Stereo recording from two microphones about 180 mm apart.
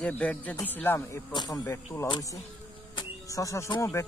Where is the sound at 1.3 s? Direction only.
20° left (ahead or behind).